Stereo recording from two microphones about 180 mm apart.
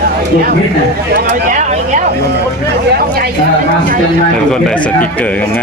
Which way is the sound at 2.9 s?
60° right (ahead or behind).